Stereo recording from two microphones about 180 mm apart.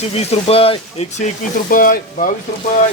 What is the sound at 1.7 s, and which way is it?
Speech, 50° left (ahead or behind).